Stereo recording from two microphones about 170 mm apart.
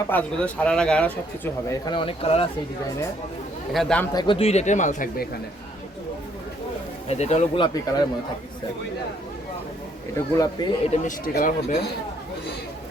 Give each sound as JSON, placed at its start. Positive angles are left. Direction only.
{"t": 0.1, "sound": "speech", "side_deg": 10}
{"t": 1.7, "sound": "speech", "side_deg": 25}
{"t": 3.7, "sound": "a man's voice", "side_deg": 0}
{"t": 4.1, "sound": "speech", "side_deg": 25}
{"t": 7.1, "sound": "speech", "side_deg": 40}
{"t": 10.2, "sound": "speech", "side_deg": 20}
{"t": 10.9, "sound": "speech", "side_deg": 45}